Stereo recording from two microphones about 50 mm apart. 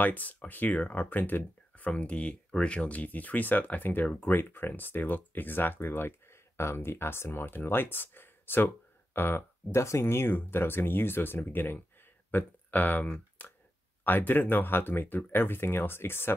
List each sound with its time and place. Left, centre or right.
0.0 s speech: left
2.0 s speech: left
6.5 s speech: left
9.8 s speech: left
13.4 s a sound: left
14.0 s speech: left